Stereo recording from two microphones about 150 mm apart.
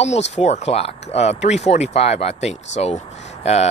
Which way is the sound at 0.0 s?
45° left (ahead or behind).